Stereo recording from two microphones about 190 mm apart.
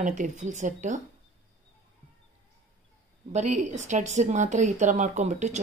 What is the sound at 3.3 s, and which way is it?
A woman's voice, 40° right (ahead or behind).